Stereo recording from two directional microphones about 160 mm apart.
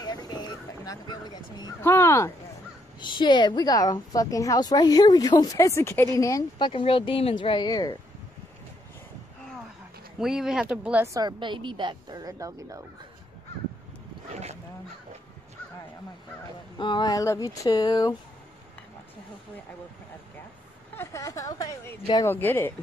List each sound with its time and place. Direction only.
0.0 s speech: 25° left (ahead or behind)
3.0 s a woman's voice: 30° left (ahead or behind)
6.7 s speech: 35° left (ahead or behind)
10.1 s speech: 5° right (ahead or behind)
11.1 s a woman's voice: 30° right (ahead or behind)
16.7 s a woman's voice: 30° left (ahead or behind)
20.9 s a woman's voice: 15° left (ahead or behind)
22.3 s speech: 15° left (ahead or behind)